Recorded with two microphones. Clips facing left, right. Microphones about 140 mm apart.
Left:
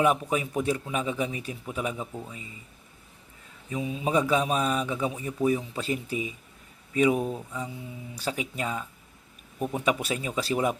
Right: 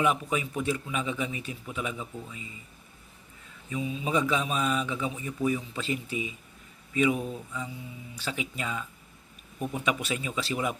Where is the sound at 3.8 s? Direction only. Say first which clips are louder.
Even; 55° left (ahead or behind).